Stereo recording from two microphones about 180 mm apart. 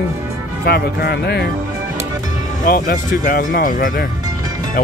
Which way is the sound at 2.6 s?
55° left (ahead or behind).